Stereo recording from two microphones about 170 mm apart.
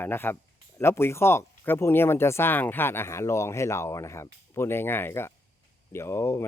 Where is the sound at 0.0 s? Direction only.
10° left (ahead or behind).